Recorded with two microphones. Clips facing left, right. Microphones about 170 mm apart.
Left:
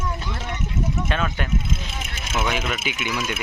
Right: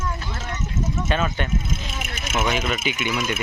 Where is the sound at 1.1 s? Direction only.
Centre (ahead or behind).